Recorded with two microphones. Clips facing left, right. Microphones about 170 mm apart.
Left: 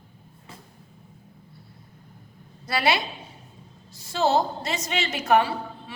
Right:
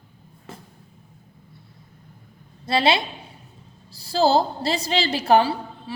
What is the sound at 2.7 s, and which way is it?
A woman's voice, 25° right (ahead or behind).